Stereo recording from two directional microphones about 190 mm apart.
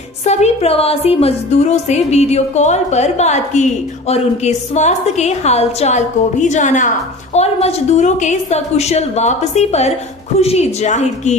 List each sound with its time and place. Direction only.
0.2 s a woman's voice: 35° left (ahead or behind)